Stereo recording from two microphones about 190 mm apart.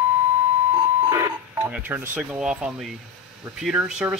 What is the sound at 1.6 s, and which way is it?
Speech, 10° right (ahead or behind).